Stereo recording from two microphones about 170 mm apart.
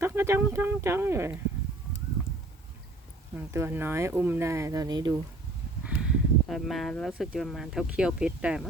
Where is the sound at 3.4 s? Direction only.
15° right (ahead or behind).